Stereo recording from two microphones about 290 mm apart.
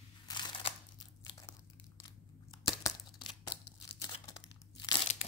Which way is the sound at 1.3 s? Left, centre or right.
Centre.